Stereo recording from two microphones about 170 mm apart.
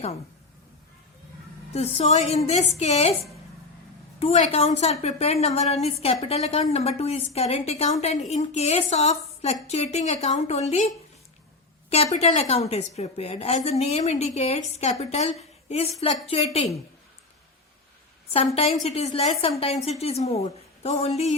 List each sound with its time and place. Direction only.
1.7 s a woman's voice: 40° left (ahead or behind)
4.2 s a woman's voice: 40° left (ahead or behind)
12.1 s a woman's voice: 40° left (ahead or behind)
18.5 s a woman's voice: 40° left (ahead or behind)